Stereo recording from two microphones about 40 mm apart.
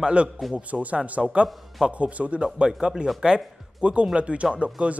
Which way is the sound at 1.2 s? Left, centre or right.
Right.